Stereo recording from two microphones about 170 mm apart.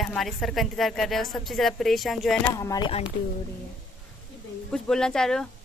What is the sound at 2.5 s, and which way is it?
Speech, 20° left (ahead or behind).